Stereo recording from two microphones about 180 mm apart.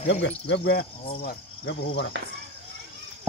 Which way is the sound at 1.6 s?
90° left.